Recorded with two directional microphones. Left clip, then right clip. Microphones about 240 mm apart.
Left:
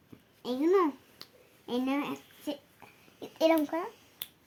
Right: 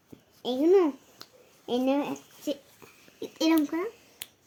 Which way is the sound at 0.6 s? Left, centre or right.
Left.